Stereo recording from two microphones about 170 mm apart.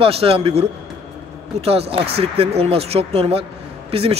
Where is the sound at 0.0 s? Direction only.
35° right (ahead or behind).